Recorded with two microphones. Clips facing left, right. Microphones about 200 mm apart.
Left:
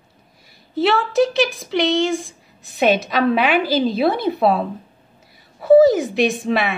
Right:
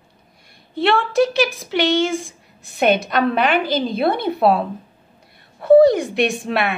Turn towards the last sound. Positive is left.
turn(degrees=0)  # may be behind; listen again after turning